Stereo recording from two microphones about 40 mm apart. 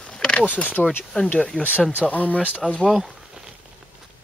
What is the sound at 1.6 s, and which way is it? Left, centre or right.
Speech, right.